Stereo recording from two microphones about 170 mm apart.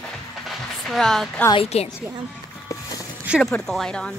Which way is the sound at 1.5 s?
35° left (ahead or behind).